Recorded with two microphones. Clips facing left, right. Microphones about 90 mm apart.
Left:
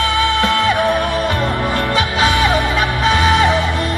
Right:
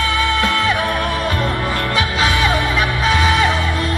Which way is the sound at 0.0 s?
20° left (ahead or behind).